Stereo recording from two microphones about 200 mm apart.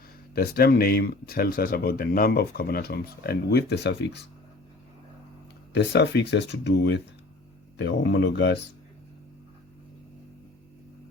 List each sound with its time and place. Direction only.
0.3 s speech: 50° left (ahead or behind)
5.7 s speech: 60° left (ahead or behind)